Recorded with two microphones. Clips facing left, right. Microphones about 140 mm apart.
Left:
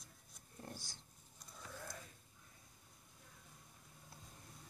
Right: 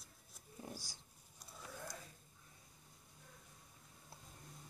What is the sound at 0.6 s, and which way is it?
Speech, 5° right (ahead or behind).